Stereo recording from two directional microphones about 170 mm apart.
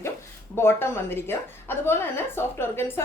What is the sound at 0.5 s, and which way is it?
A woman's voice, 15° left (ahead or behind).